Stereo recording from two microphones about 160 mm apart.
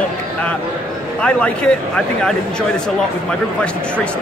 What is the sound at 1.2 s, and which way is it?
A man's voice, 5° left (ahead or behind).